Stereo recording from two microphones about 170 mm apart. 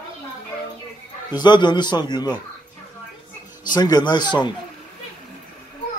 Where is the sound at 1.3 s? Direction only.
25° left (ahead or behind).